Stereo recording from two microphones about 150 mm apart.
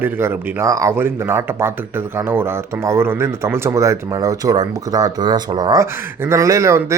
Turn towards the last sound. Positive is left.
turn(degrees=-20)  # may be behind; listen again after turning